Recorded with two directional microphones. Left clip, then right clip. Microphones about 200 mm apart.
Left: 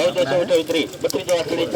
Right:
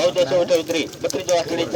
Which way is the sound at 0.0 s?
10° right (ahead or behind).